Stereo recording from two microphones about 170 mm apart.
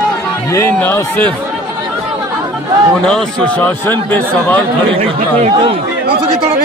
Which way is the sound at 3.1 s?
5° left (ahead or behind).